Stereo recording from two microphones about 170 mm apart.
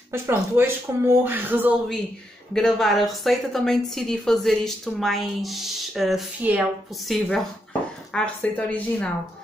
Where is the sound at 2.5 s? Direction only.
5° left (ahead or behind).